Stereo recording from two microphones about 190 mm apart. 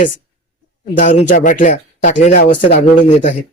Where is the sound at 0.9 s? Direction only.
40° left (ahead or behind).